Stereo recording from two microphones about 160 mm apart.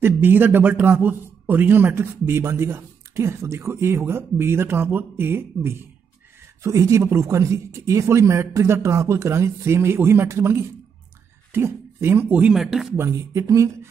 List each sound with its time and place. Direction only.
0.0 s a man's voice: 15° right (ahead or behind)
12.9 s speech: 20° right (ahead or behind)